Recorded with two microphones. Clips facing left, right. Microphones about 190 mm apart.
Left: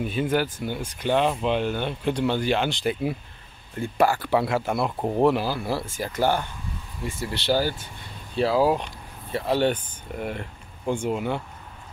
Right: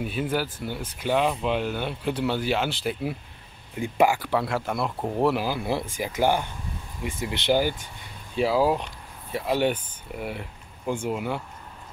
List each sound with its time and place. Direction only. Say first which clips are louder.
0.0 s speech: left 3 dB; 5° right (ahead or behind)
3.7 s speech: even; 15° right (ahead or behind)
4.3 s speech: left 3 dB; 5° left (ahead or behind)
5.2 s speech: left 2 dB; 10° right (ahead or behind)